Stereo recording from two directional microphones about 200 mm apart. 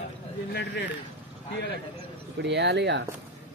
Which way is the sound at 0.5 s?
60° left (ahead or behind).